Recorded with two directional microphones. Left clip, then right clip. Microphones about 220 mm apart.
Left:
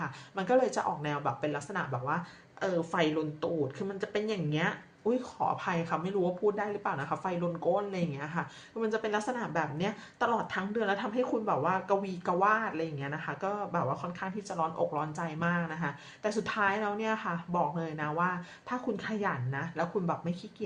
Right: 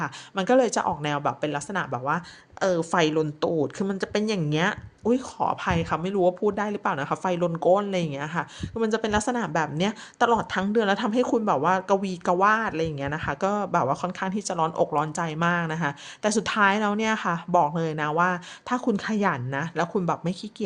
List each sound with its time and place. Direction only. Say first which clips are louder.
0.0 s speech: right 8 dB; 45° right (ahead or behind)